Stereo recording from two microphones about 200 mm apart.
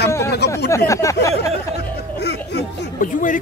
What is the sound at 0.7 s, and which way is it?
Speech, 15° left (ahead or behind).